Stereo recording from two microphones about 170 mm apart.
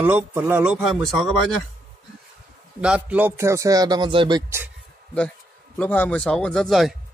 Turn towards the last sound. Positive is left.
turn(degrees=0)  # may be behind; listen again after turning